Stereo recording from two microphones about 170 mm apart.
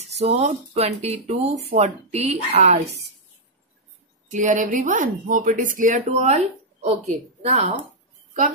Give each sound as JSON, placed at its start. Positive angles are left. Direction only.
{"t": 0.0, "sound": "speech", "side_deg": -40}
{"t": 4.3, "sound": "speech", "side_deg": -50}